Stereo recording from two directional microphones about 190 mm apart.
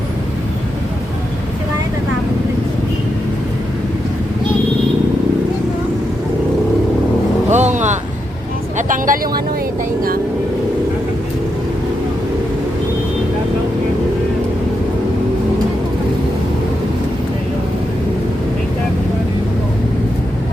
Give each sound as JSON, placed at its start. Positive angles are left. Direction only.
{"t": 7.5, "sound": "vehicle", "side_deg": -40}